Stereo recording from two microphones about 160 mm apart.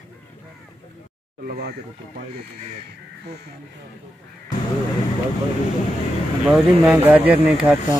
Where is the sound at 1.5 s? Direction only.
70° right (ahead or behind).